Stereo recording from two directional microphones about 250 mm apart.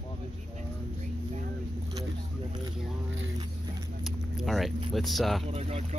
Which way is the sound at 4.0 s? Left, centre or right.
Centre.